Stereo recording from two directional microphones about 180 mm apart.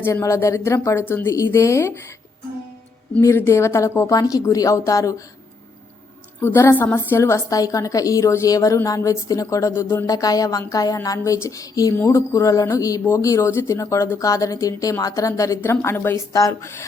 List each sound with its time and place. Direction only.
0.0 s a woman's voice: 15° left (ahead or behind)
3.2 s a woman's voice: 15° left (ahead or behind)
6.4 s a woman's voice: 15° left (ahead or behind)